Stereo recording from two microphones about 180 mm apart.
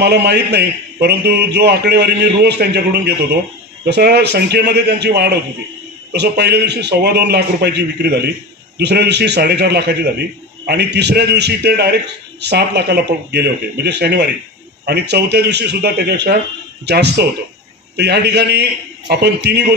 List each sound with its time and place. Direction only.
0.0 s a man's voice: 65° right (ahead or behind)